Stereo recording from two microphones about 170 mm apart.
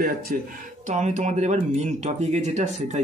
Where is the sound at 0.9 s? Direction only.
45° right (ahead or behind).